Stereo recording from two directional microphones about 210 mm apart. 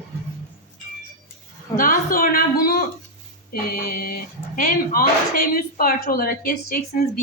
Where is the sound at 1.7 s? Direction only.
40° left (ahead or behind).